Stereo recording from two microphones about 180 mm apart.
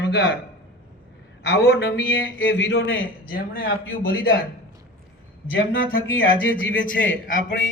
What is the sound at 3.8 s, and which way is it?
Speech, 90° left.